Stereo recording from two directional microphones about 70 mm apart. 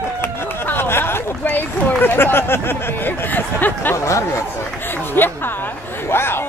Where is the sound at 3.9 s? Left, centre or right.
Left.